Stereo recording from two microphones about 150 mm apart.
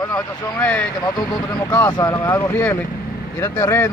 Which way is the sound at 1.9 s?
30° left (ahead or behind).